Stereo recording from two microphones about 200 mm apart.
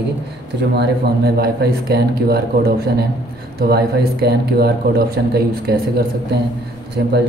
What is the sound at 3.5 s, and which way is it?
A man's voice, 50° right (ahead or behind).